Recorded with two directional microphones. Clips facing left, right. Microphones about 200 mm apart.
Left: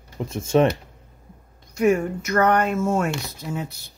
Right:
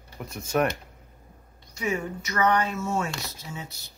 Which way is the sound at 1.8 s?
55° left (ahead or behind).